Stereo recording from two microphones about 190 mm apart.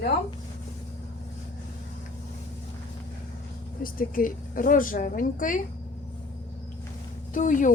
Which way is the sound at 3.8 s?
50° left (ahead or behind).